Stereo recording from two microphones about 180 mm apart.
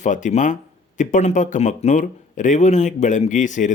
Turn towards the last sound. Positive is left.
turn(degrees=45)  # may be behind; listen again after turning